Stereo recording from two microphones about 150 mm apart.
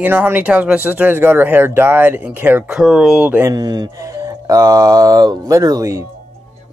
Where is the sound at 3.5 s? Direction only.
30° right (ahead or behind).